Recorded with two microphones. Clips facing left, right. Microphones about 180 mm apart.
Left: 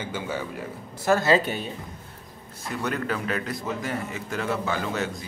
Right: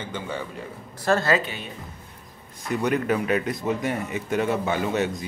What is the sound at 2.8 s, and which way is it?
A man's voice, 15° right (ahead or behind).